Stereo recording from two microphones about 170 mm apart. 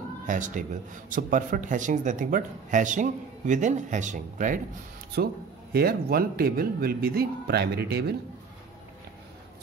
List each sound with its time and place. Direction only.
0.3 s speech: 50° right (ahead or behind)
5.1 s speech: 65° right (ahead or behind)